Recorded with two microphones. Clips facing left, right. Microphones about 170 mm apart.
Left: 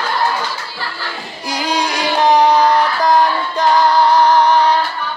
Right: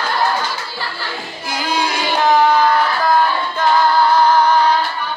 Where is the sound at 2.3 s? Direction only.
35° left (ahead or behind).